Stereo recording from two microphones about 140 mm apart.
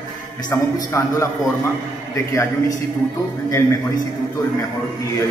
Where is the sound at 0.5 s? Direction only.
20° left (ahead or behind).